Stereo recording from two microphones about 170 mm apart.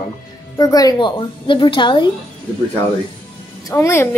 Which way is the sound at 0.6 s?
20° left (ahead or behind).